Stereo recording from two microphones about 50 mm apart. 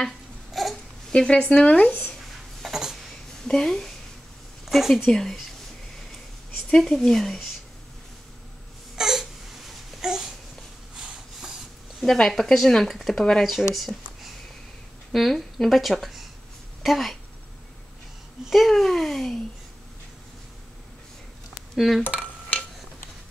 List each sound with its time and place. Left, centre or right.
0.0 s babbling: centre
1.1 s speech: centre
2.6 s a sound: centre
3.4 s speech: centre
4.6 s a woman's voice: centre
5.0 s speech: centre
6.8 s speech: centre
8.9 s babbling: centre
11.0 s rub: centre
12.2 s speech: centre
13.7 s a sound: centre
15.1 s speech: centre
18.4 s speech: centre
21.7 s speech: centre